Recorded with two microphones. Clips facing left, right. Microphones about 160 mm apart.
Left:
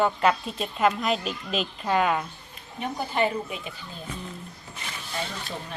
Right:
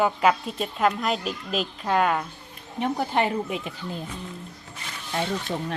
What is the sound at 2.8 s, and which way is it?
Speech, 80° right.